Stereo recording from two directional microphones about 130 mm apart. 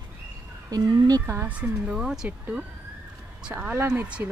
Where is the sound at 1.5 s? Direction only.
10° right (ahead or behind).